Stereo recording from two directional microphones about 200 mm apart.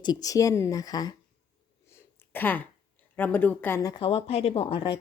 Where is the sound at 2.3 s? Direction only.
10° left (ahead or behind).